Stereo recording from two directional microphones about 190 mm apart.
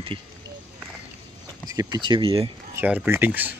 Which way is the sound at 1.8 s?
20° right (ahead or behind).